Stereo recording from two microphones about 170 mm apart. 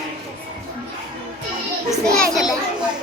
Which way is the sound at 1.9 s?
Centre (ahead or behind).